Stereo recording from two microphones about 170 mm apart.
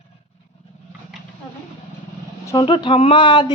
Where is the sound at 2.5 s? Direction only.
25° left (ahead or behind).